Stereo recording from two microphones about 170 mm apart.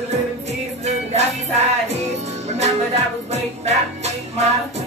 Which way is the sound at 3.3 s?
40° right (ahead or behind).